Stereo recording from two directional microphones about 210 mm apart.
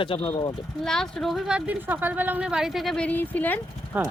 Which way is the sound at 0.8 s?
Centre (ahead or behind).